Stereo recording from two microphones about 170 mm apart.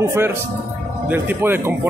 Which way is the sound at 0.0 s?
15° right (ahead or behind).